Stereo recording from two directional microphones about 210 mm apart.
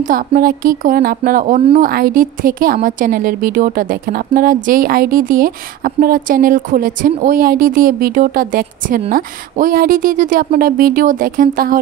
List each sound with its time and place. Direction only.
0.0 s a woman's voice: 45° right (ahead or behind)